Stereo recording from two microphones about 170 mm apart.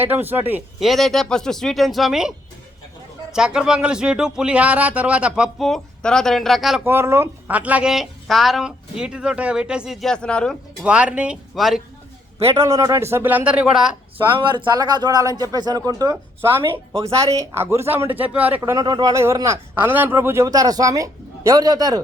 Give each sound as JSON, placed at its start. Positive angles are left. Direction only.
{"t": 0.0, "sound": "speech", "side_deg": -10}
{"t": 0.9, "sound": "speech", "side_deg": 0}
{"t": 3.3, "sound": "speech", "side_deg": -5}
{"t": 6.8, "sound": "speech", "side_deg": -15}
{"t": 10.8, "sound": "speech", "side_deg": -5}
{"t": 12.5, "sound": "speech", "side_deg": -20}
{"t": 14.3, "sound": "speech", "side_deg": -30}